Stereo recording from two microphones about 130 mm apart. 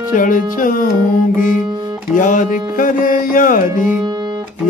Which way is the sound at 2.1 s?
90° left.